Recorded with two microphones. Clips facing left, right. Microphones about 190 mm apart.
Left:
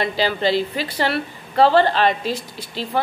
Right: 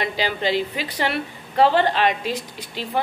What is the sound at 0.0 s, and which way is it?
A woman's voice, 15° right (ahead or behind).